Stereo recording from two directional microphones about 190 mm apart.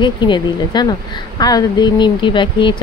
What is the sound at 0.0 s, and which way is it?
A woman's voice, 25° left (ahead or behind).